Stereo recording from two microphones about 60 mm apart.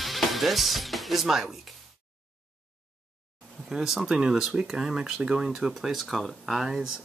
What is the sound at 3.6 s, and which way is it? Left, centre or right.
Speech, centre.